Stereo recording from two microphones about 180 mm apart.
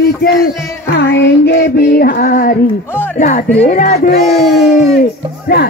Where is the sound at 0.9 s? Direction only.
65° left (ahead or behind).